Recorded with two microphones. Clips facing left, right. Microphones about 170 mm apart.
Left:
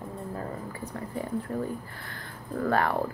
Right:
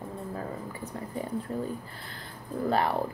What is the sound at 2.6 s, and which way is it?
Speech, 15° right (ahead or behind).